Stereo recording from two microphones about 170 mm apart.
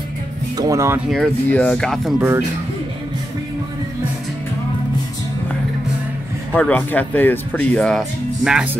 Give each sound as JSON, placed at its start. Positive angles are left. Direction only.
{"t": 0.6, "sound": "speech", "side_deg": -20}
{"t": 1.0, "sound": "speech", "side_deg": 0}
{"t": 2.1, "sound": "speech", "side_deg": -15}
{"t": 6.5, "sound": "speech", "side_deg": 10}